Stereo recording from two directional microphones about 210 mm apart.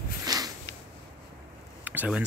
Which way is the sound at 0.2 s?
15° right (ahead or behind).